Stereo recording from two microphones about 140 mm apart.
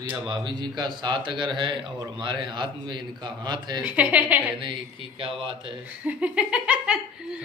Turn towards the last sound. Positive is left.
turn(degrees=-10)  # may be behind; listen again after turning